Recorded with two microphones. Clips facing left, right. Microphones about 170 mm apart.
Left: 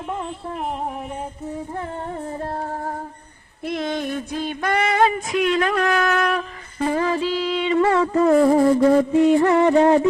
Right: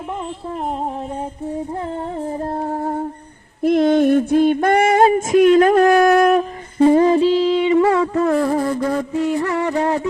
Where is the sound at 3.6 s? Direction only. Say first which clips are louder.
Right 11 dB; 50° right (ahead or behind).